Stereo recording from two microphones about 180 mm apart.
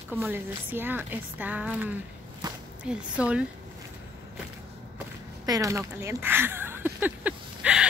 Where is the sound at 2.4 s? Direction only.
20° right (ahead or behind).